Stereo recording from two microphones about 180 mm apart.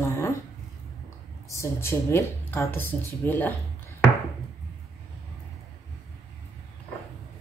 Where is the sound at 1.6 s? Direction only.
15° left (ahead or behind).